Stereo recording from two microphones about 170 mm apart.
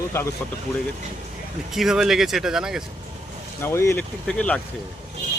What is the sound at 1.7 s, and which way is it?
Speech, centre (ahead or behind).